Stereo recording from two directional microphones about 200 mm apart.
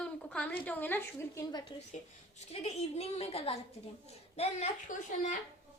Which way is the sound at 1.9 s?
35° left (ahead or behind).